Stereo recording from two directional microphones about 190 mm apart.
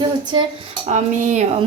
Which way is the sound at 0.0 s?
25° right (ahead or behind).